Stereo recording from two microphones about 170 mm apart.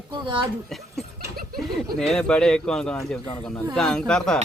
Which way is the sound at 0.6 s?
Centre (ahead or behind).